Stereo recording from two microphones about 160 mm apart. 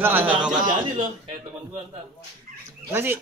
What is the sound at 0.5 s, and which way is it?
Speech, 55° right (ahead or behind).